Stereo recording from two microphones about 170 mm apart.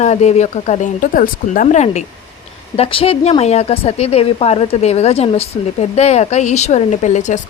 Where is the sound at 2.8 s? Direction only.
35° left (ahead or behind).